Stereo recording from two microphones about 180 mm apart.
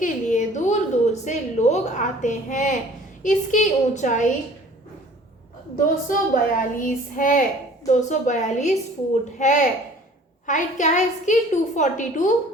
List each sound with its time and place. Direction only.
0.0 s a sound: 40° left (ahead or behind)
3.2 s a woman's voice: 45° left (ahead or behind)
5.7 s a woman's voice: 45° left (ahead or behind)